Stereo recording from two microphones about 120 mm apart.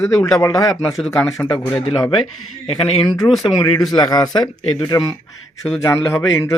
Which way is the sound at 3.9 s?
35° left (ahead or behind).